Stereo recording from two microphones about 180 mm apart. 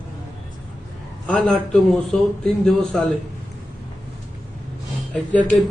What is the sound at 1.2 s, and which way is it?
A man's voice, 5° left (ahead or behind).